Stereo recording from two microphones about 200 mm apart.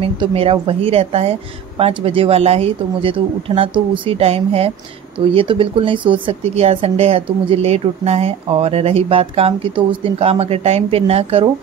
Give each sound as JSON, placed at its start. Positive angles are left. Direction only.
{"t": 0.0, "sound": "speech", "side_deg": -30}